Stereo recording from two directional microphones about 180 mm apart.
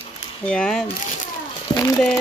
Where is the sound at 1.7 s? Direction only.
20° left (ahead or behind).